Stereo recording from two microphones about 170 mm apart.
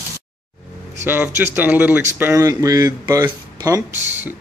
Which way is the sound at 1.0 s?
10° right (ahead or behind).